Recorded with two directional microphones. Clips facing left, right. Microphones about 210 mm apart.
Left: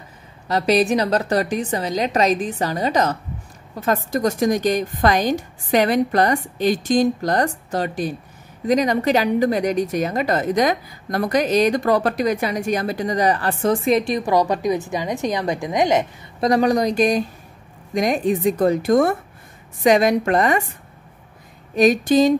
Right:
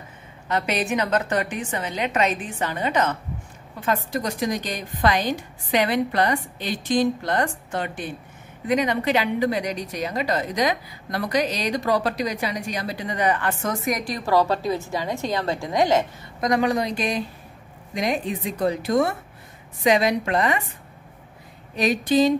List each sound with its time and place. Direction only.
0.5 s a woman's voice: 35° left (ahead or behind); by 16.1 s 20° left (ahead or behind)
16.3 s a woman's voice: 35° left (ahead or behind)
21.7 s a woman's voice: 45° left (ahead or behind)